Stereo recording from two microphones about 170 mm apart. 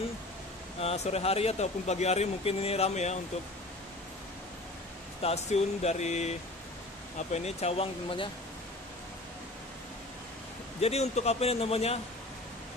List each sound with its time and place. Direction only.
0.7 s speech: 40° left (ahead or behind)
5.2 s speech: 40° left (ahead or behind)
7.3 s speech: 40° left (ahead or behind)
10.8 s speech: 40° left (ahead or behind)